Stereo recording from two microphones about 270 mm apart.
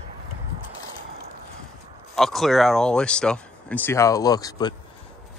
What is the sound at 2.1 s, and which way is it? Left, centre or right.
Speech, centre.